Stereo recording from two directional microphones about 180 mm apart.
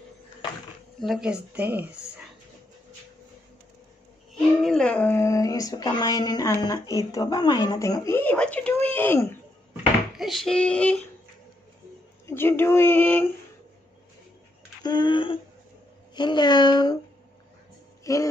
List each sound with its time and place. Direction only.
1.0 s speech: 5° right (ahead or behind)
4.6 s speech: 5° left (ahead or behind)
10.1 s a sound: centre (ahead or behind)
12.3 s speech: 10° left (ahead or behind)
14.8 s speech: 25° left (ahead or behind)
18.0 s a sound: 20° left (ahead or behind)